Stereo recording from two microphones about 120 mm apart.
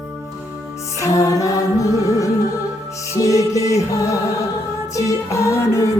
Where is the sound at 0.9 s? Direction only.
25° left (ahead or behind).